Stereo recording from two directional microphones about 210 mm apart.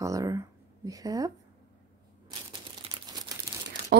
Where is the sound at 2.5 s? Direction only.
20° right (ahead or behind).